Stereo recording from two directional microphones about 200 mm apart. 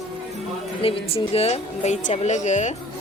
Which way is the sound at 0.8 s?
30° left (ahead or behind).